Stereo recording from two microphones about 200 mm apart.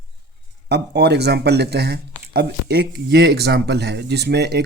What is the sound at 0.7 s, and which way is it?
Speech, 55° right (ahead or behind).